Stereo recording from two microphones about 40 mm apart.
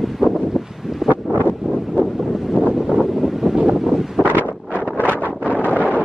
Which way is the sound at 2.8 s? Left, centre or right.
Centre.